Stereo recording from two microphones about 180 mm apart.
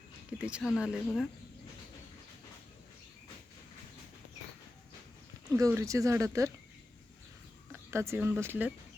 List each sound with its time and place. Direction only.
0.3 s speech: 5° right (ahead or behind)
5.5 s speech: 15° right (ahead or behind)
7.7 s speech: 15° right (ahead or behind)